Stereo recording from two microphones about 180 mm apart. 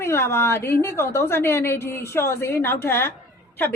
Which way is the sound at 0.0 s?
15° left (ahead or behind).